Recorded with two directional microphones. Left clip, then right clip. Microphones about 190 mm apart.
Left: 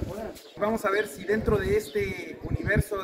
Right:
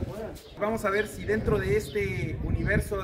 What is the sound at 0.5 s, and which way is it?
A man's voice, 10° right (ahead or behind).